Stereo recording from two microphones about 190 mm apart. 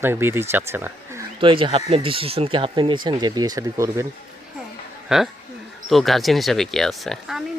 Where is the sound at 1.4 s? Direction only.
25° right (ahead or behind).